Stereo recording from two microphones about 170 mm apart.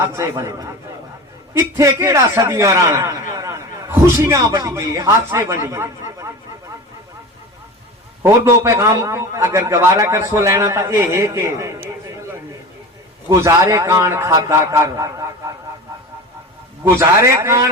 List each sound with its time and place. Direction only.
0.0 s a man's voice: 15° right (ahead or behind)
8.2 s a man's voice: 15° right (ahead or behind)
13.3 s a man's voice: 15° right (ahead or behind)
17.0 s a man's voice: 15° right (ahead or behind)